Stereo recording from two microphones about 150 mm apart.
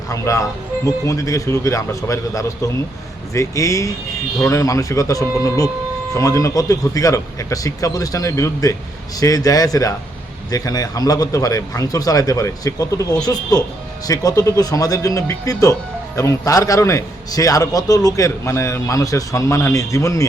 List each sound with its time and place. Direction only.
0.1 s a man's voice: 20° left (ahead or behind)